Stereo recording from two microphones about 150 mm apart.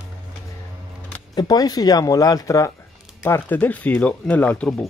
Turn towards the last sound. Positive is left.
turn(degrees=10)  # may be behind; listen again after turning